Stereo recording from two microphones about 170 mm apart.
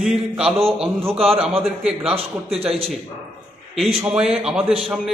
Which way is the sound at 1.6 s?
Centre (ahead or behind).